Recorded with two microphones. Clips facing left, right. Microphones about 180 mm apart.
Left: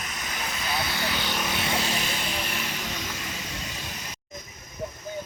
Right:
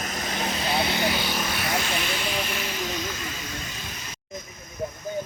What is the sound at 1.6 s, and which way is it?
Vehicle, 30° left (ahead or behind).